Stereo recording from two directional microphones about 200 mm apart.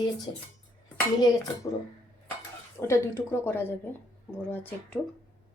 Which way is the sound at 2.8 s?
15° left (ahead or behind).